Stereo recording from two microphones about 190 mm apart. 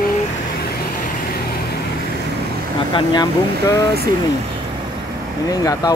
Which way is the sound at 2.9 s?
20° left (ahead or behind).